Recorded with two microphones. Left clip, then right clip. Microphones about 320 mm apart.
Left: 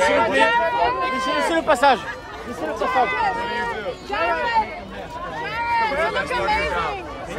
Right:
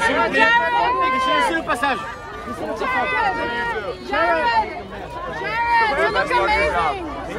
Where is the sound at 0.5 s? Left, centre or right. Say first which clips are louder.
Right 2 dB; right.